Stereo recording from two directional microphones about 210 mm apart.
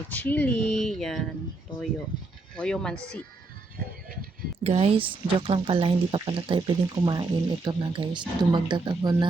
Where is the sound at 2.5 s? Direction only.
5° left (ahead or behind).